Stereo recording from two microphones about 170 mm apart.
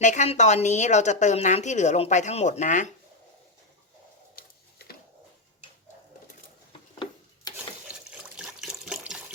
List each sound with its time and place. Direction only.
0.0 s a woman's voice: 45° left (ahead or behind)
4.4 s a sound: 65° left (ahead or behind)
8.4 s water: 5° right (ahead or behind)